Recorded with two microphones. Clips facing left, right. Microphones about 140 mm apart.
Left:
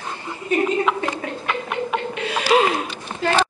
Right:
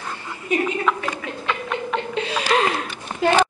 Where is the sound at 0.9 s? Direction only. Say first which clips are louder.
Left 3 dB; 25° left (ahead or behind).